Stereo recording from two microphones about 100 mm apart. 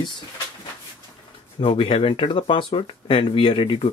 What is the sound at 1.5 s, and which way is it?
Speech, 70° left (ahead or behind).